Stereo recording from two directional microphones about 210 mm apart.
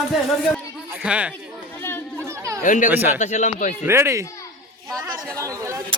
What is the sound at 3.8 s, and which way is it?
Speech, 10° right (ahead or behind).